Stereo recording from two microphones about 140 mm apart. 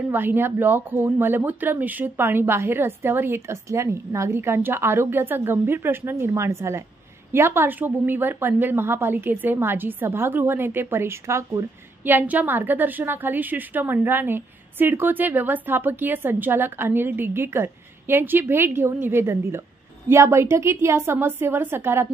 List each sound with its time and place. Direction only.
0.1 s a woman's voice: 15° right (ahead or behind)